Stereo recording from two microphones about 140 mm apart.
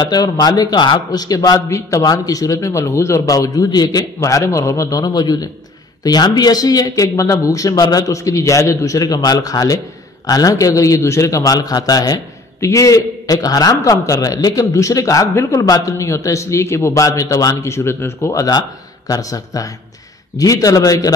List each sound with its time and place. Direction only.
0.0 s a man's voice: 30° left (ahead or behind)